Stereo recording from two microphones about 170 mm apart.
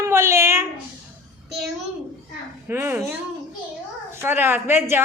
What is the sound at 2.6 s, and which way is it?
Speech, 15° right (ahead or behind).